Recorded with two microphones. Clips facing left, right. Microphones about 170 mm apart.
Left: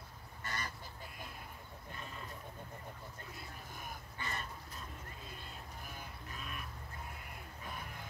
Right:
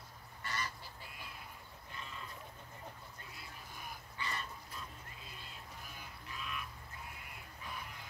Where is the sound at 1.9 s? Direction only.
45° left (ahead or behind).